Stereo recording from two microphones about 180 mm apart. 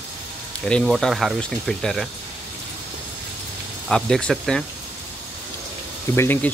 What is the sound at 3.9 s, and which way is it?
Speech, 5° left (ahead or behind).